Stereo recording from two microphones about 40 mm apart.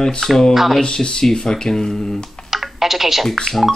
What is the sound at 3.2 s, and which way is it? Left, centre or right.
Speech, centre.